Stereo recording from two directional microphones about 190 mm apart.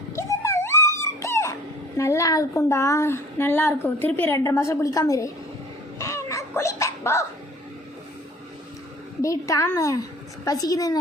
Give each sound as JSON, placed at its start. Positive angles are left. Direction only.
{"t": 0.2, "sound": "a sound", "side_deg": 15}
{"t": 2.0, "sound": "a woman's voice", "side_deg": 15}
{"t": 6.0, "sound": "cat", "side_deg": 15}
{"t": 9.2, "sound": "a woman's voice", "side_deg": 15}